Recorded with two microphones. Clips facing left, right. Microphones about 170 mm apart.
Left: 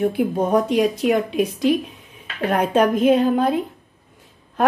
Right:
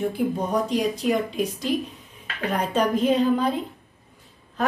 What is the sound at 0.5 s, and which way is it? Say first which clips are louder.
Speech: left 6 dB; 60° left (ahead or behind).